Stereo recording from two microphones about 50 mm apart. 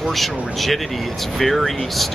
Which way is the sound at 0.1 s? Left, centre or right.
Centre.